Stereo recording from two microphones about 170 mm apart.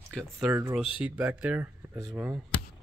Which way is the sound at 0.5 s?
15° right (ahead or behind).